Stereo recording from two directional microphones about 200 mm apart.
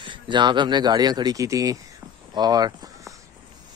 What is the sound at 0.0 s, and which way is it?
Speech, 25° right (ahead or behind).